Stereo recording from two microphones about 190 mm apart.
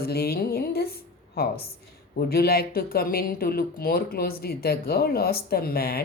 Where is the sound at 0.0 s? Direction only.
55° left (ahead or behind).